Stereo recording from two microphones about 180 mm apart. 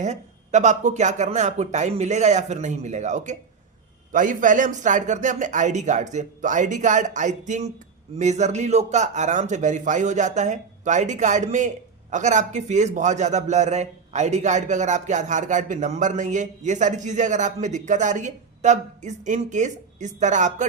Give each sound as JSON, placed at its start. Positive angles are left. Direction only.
{"t": 0.0, "sound": "a man's voice", "side_deg": -40}